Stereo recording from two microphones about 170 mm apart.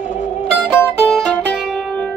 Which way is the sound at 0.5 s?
10° left (ahead or behind).